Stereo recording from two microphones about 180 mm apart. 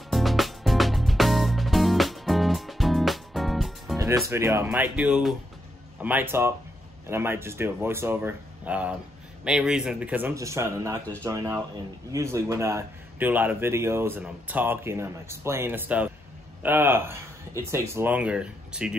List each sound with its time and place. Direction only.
0.1 s music: centre (ahead or behind)
4.3 s a man's voice: 15° right (ahead or behind)